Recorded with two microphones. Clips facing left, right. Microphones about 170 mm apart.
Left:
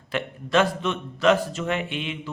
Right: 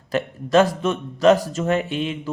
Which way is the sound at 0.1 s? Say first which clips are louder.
Right 5 dB; 40° right (ahead or behind).